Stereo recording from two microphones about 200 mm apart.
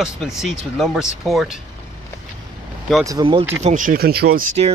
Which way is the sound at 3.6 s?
40° right (ahead or behind).